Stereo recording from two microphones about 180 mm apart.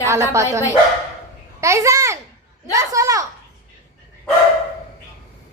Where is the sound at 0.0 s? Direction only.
15° right (ahead or behind).